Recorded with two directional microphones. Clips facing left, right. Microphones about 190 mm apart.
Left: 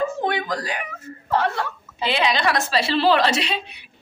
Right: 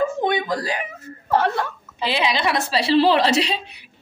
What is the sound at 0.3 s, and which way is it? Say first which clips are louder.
Speech: right 3 dB; 30° right (ahead or behind).